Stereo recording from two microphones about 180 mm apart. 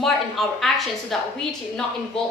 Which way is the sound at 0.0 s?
Centre (ahead or behind).